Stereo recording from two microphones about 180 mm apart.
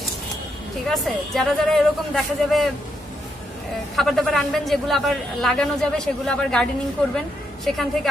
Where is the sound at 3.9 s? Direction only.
Centre (ahead or behind).